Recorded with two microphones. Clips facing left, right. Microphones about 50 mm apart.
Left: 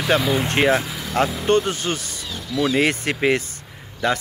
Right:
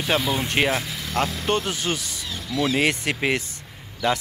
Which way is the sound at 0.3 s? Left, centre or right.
Left.